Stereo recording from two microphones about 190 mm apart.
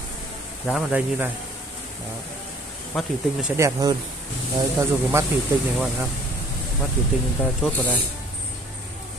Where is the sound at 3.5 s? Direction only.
15° right (ahead or behind).